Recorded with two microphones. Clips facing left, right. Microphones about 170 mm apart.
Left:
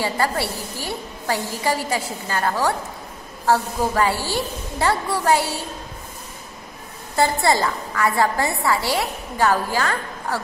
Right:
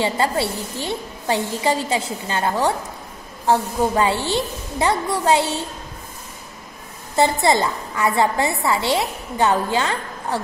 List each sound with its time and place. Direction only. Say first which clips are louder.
0.0 s a woman's voice: right 2 dB; 25° right (ahead or behind)
7.2 s a woman's voice: right 2 dB; 20° right (ahead or behind)